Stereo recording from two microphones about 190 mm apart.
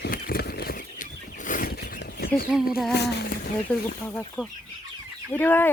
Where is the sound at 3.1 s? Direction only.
55° left (ahead or behind).